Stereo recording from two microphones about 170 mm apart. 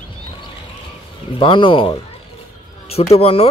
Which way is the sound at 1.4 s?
30° left (ahead or behind).